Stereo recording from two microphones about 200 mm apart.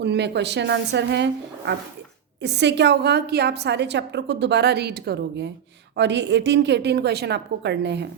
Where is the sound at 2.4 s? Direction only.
60° right (ahead or behind).